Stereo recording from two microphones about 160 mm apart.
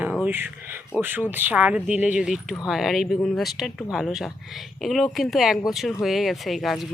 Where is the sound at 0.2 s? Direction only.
10° right (ahead or behind).